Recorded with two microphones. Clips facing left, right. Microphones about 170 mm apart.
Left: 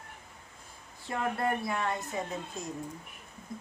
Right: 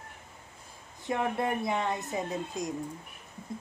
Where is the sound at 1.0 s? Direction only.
20° right (ahead or behind).